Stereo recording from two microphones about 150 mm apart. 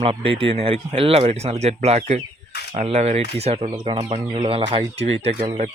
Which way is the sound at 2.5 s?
90° left.